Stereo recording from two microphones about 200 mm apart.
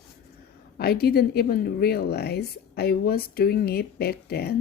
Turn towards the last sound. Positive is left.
turn(degrees=50)  # may be behind; listen again after turning